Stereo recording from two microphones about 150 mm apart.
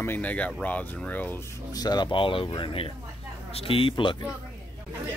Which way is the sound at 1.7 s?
25° left (ahead or behind).